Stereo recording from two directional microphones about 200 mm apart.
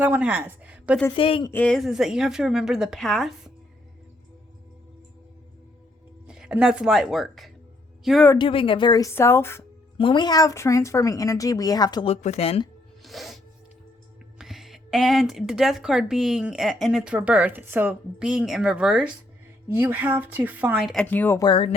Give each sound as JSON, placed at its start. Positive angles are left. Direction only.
{"t": 0.0, "sound": "speech", "side_deg": -5}
{"t": 1.1, "sound": "a woman's voice", "side_deg": 25}
{"t": 1.5, "sound": "speech", "side_deg": 10}
{"t": 6.2, "sound": "speech", "side_deg": -5}
{"t": 8.4, "sound": "speech", "side_deg": 25}
{"t": 10.0, "sound": "speech", "side_deg": 25}
{"t": 12.1, "sound": "speech", "side_deg": 35}
{"t": 13.0, "sound": "music", "side_deg": 0}
{"t": 14.3, "sound": "speech", "side_deg": 0}
{"t": 21.4, "sound": "a woman's voice", "side_deg": 25}